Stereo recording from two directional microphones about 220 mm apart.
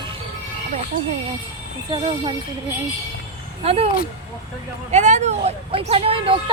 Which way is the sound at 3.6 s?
25° right (ahead or behind).